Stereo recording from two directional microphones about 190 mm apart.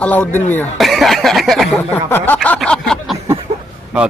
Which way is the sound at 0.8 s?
Centre (ahead or behind).